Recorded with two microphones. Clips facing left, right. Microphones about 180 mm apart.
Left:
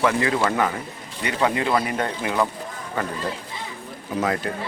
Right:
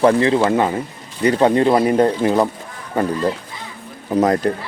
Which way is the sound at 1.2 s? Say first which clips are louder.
Right 9 dB; 35° right (ahead or behind).